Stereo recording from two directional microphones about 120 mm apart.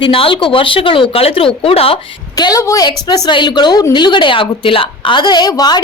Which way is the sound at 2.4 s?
30° left (ahead or behind).